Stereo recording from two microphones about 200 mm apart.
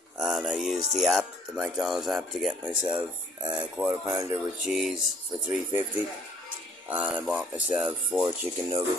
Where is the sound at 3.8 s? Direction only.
10° right (ahead or behind).